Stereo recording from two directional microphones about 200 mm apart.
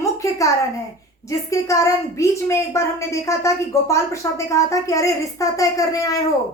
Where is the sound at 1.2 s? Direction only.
15° left (ahead or behind).